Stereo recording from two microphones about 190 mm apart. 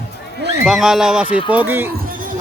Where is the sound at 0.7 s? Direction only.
Centre (ahead or behind).